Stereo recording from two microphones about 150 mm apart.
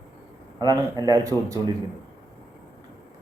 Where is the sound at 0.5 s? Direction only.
25° right (ahead or behind).